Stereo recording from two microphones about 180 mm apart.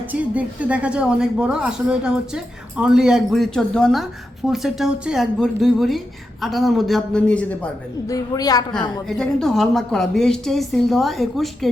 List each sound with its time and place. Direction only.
0.1 s a woman's voice: 10° right (ahead or behind)
8.0 s a woman's voice: 20° left (ahead or behind)
9.0 s a woman's voice: centre (ahead or behind)